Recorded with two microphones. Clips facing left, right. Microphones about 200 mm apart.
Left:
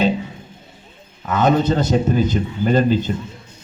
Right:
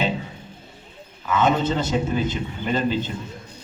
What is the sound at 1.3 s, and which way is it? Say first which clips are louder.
A man's voice: left 4 dB; 40° left (ahead or behind).